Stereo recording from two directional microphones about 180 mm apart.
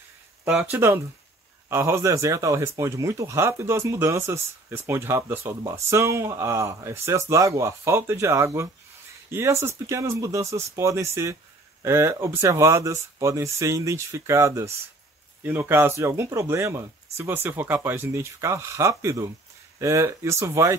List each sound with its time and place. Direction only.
0.5 s speech: 15° right (ahead or behind)